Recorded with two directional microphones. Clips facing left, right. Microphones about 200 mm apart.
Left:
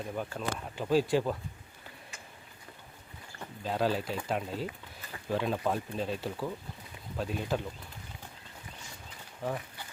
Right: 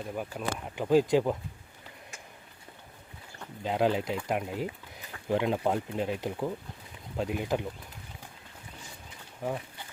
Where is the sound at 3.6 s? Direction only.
20° right (ahead or behind).